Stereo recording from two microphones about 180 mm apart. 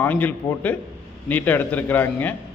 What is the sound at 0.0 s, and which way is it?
A man's voice, 10° left (ahead or behind).